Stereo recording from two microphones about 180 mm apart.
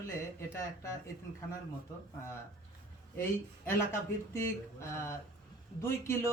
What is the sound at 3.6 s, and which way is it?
Speech, 15° left (ahead or behind).